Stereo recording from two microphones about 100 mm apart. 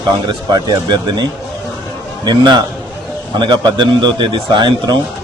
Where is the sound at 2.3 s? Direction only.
45° right (ahead or behind).